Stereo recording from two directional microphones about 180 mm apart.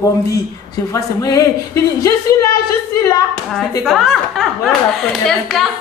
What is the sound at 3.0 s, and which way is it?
Speech, 20° left (ahead or behind).